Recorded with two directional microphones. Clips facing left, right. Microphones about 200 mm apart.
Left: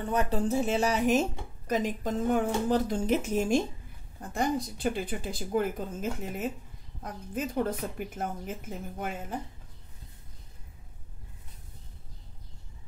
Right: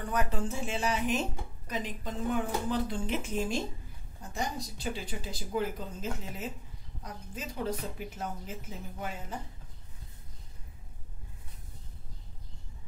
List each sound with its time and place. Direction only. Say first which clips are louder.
0.0 s speech: left 4 dB; 25° left (ahead or behind); by 9.1 s 50° left (ahead or behind)